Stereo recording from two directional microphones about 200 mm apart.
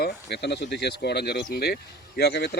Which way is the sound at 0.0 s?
60° left (ahead or behind).